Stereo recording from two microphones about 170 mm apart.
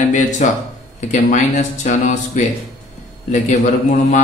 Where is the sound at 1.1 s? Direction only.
45° left (ahead or behind).